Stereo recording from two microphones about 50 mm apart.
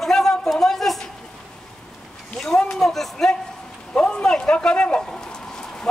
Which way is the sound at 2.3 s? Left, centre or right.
Centre.